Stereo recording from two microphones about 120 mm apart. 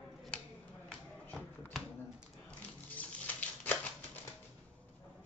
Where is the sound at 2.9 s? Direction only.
15° left (ahead or behind).